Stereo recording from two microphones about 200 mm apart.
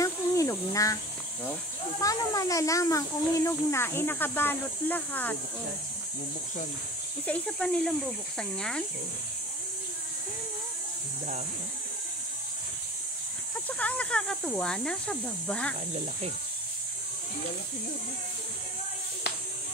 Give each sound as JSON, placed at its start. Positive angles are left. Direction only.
{"t": 0.0, "sound": "cricket", "side_deg": 15}
{"t": 2.0, "sound": "speech", "side_deg": 15}
{"t": 7.2, "sound": "speech", "side_deg": 5}
{"t": 13.7, "sound": "speech", "side_deg": 5}